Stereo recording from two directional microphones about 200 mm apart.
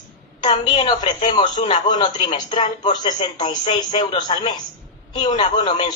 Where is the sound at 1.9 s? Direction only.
20° left (ahead or behind).